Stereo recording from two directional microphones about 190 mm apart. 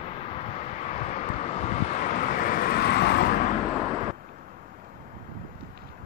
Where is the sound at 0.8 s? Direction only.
35° left (ahead or behind); by 3.3 s 60° left (ahead or behind).